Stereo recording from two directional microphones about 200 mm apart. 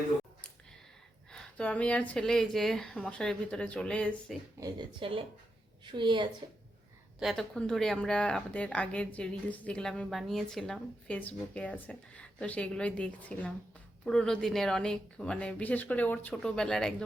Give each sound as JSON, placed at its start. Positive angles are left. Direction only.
{"t": 1.3, "sound": "speech", "side_deg": 5}
{"t": 4.6, "sound": "speech", "side_deg": -25}
{"t": 7.2, "sound": "speech", "side_deg": 0}